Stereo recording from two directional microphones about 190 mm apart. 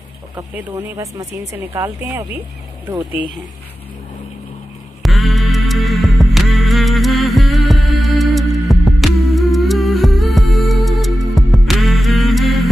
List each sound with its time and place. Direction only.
0.4 s speech: 15° right (ahead or behind)
5.0 s music: centre (ahead or behind)